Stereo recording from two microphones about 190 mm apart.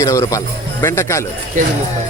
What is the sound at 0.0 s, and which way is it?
Speech, 15° left (ahead or behind).